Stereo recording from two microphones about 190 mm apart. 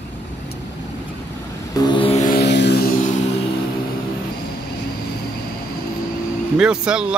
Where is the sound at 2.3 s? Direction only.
65° left (ahead or behind).